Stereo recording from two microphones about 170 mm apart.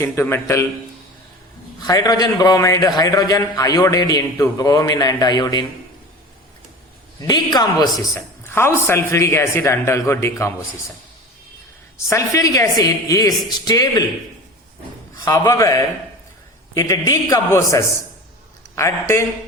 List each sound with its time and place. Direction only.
0.0 s speech: 15° left (ahead or behind)
1.8 s a man's voice: 25° left (ahead or behind)
7.2 s a man's voice: 25° left (ahead or behind)
8.1 s speech: 15° left (ahead or behind)
12.0 s a man's voice: 20° left (ahead or behind)
15.2 s a man's voice: 15° left (ahead or behind)